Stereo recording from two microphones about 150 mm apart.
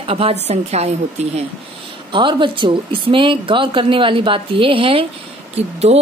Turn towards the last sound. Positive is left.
turn(degrees=-45)  # may be behind; listen again after turning